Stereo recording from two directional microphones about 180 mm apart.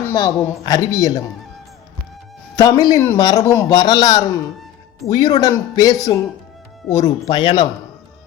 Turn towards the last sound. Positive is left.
turn(degrees=25)  # may be behind; listen again after turning